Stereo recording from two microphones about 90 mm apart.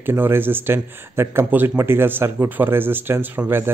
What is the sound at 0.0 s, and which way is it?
A man's voice, 25° right (ahead or behind).